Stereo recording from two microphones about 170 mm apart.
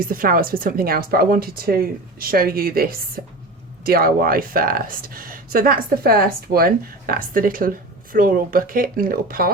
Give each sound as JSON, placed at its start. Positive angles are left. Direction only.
{"t": 0.0, "sound": "speech", "side_deg": -55}